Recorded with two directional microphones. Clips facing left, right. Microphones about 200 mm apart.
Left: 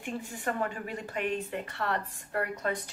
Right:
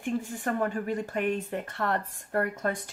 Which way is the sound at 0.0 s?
45° right (ahead or behind).